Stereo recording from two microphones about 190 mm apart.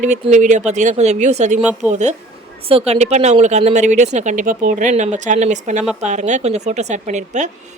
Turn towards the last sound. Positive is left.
turn(degrees=-40)  # may be behind; listen again after turning